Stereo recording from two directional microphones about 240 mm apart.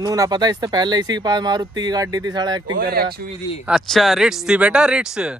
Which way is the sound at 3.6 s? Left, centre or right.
Centre.